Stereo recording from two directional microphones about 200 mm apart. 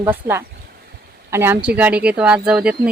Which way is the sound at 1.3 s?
10° right (ahead or behind).